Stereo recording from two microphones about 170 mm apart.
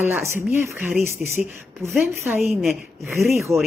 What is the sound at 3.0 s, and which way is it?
Speech, 15° right (ahead or behind).